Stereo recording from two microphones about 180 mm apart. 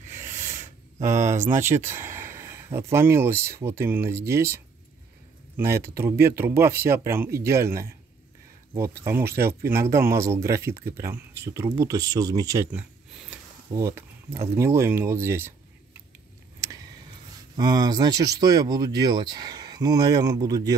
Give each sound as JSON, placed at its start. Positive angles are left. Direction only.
{"t": 0.2, "sound": "rub", "side_deg": -40}
{"t": 0.9, "sound": "speech", "side_deg": -15}
{"t": 5.6, "sound": "speech", "side_deg": -60}
{"t": 6.3, "sound": "speech", "side_deg": -15}
{"t": 16.6, "sound": "vehicle", "side_deg": -15}
{"t": 17.6, "sound": "speech", "side_deg": -20}